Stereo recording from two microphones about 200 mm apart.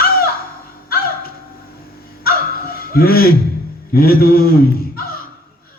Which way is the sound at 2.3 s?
50° left (ahead or behind).